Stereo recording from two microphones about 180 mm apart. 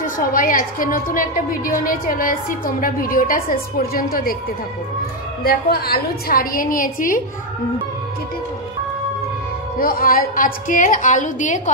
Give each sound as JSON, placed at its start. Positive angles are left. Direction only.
{"t": 0.0, "sound": "a woman's voice", "side_deg": 50}
{"t": 5.4, "sound": "a woman's voice", "side_deg": 60}
{"t": 9.8, "sound": "a woman's voice", "side_deg": 55}